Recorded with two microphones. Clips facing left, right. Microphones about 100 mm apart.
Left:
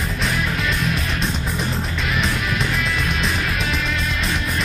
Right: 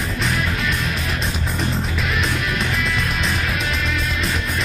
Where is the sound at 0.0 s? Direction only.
Centre (ahead or behind).